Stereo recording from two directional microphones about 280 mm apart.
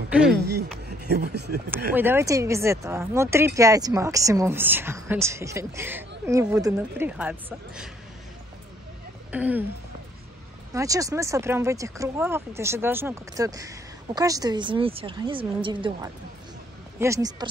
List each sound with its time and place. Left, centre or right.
0.1 s speech: centre
0.4 s speech: right
2.0 s speech: centre
9.3 s speech: centre
10.7 s speech: centre